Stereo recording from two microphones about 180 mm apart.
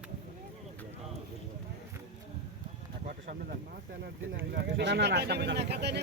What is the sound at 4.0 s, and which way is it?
Speech, 70° right (ahead or behind).